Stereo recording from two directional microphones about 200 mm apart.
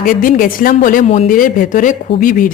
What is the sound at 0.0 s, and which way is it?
A woman's voice, 45° left (ahead or behind).